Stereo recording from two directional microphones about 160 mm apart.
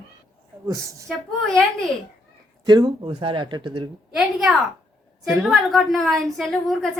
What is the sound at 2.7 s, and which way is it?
Speech, 25° right (ahead or behind).